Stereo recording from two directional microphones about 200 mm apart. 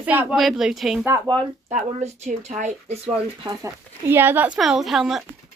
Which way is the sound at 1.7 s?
35° right (ahead or behind).